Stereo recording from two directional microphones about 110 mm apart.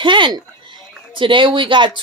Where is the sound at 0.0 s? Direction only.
50° right (ahead or behind).